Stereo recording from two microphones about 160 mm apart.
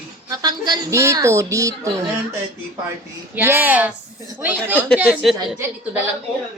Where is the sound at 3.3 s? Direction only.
15° right (ahead or behind).